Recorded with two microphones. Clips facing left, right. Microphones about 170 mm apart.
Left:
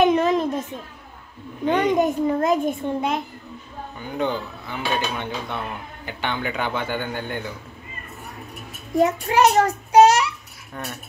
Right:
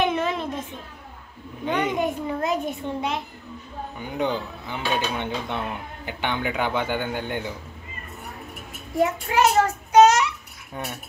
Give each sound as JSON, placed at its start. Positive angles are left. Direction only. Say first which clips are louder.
{"t": 0.0, "sound": "a sound", "louder": "left 6 dB", "side_deg": 40}
{"t": 1.7, "sound": "a child's voice", "louder": "left 5 dB", "side_deg": 45}
{"t": 4.0, "sound": "speech", "louder": "left 1 dB", "side_deg": -15}
{"t": 9.0, "sound": "a child's voice", "louder": "left 3 dB", "side_deg": 40}
{"t": 10.7, "sound": "cutlery", "louder": "even", "side_deg": -15}